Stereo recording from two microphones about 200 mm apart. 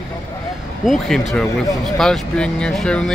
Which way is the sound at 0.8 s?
Centre (ahead or behind).